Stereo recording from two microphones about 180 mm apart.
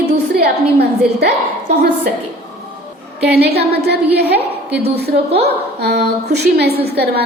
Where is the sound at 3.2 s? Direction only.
65° right (ahead or behind).